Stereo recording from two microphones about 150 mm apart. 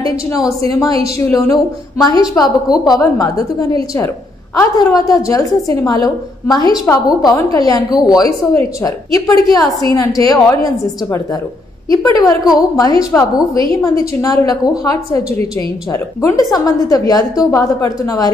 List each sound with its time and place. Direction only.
0.3 s a woman's voice: 20° left (ahead or behind)
15.9 s a woman's voice: 20° left (ahead or behind)